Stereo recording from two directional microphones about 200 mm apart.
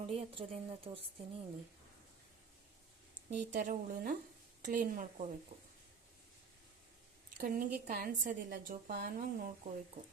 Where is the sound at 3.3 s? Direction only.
40° right (ahead or behind).